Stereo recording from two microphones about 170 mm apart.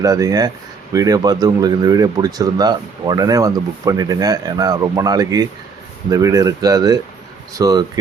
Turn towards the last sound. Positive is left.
turn(degrees=-20)  # may be behind; listen again after turning